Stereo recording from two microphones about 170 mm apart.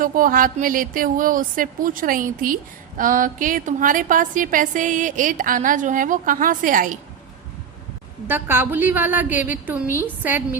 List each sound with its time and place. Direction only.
0.0 s a woman's voice: 55° right (ahead or behind)
8.3 s a woman's voice: 15° right (ahead or behind)